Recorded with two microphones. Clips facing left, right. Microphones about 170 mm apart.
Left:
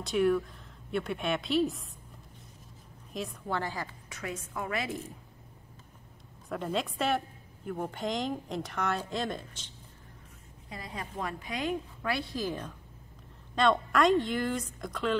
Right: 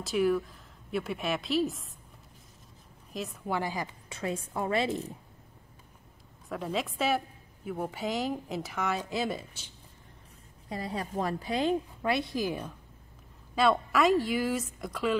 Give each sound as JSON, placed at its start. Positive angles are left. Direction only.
{"t": 0.0, "sound": "a woman's voice", "side_deg": 0}
{"t": 3.1, "sound": "a woman's voice", "side_deg": 0}
{"t": 3.5, "sound": "a woman's voice", "side_deg": -15}
{"t": 4.1, "sound": "a woman's voice", "side_deg": -30}
{"t": 6.5, "sound": "a woman's voice", "side_deg": 0}
{"t": 10.7, "sound": "a woman's voice", "side_deg": -35}